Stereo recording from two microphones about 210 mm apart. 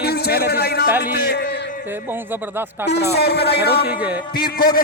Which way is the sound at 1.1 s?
50° left (ahead or behind).